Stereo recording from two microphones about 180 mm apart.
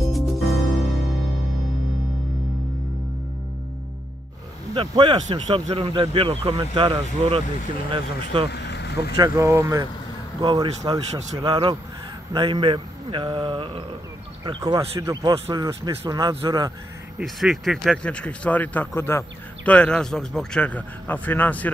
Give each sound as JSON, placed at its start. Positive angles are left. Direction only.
{"t": 0.1, "sound": "music", "side_deg": 0}
{"t": 4.7, "sound": "speech", "side_deg": -25}
{"t": 8.5, "sound": "vehicle", "side_deg": 70}
{"t": 9.1, "sound": "speech", "side_deg": -20}
{"t": 17.2, "sound": "speech", "side_deg": 0}